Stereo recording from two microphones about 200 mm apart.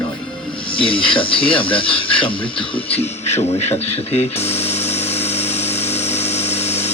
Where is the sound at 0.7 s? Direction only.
25° left (ahead or behind).